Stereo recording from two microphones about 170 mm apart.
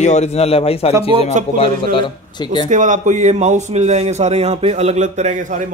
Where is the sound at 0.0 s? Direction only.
40° left (ahead or behind); by 2.7 s 25° left (ahead or behind).